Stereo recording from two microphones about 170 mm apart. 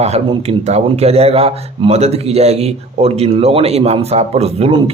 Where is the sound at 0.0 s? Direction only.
40° right (ahead or behind).